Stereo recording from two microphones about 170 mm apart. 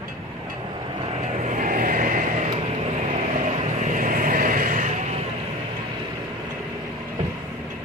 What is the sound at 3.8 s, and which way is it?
Vehicle, 50° right (ahead or behind).